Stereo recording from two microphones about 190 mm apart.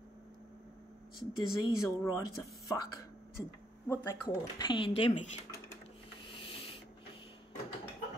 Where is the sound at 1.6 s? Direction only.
15° left (ahead or behind).